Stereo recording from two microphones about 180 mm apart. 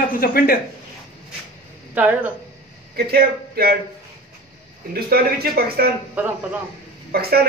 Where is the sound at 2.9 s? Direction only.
60° right (ahead or behind).